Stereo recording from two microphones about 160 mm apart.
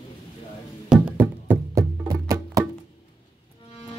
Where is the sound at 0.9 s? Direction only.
15° right (ahead or behind).